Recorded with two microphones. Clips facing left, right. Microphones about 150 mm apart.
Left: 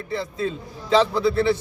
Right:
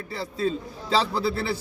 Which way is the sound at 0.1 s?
35° right (ahead or behind).